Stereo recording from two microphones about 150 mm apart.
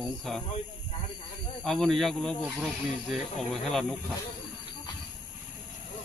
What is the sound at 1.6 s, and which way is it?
Speech, 5° left (ahead or behind).